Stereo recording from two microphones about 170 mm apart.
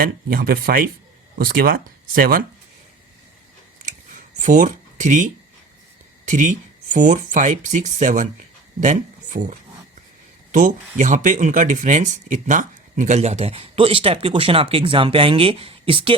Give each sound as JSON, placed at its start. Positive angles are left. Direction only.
{"t": 0.0, "sound": "speech", "side_deg": -60}
{"t": 4.4, "sound": "speech", "side_deg": -45}
{"t": 10.9, "sound": "speech", "side_deg": -45}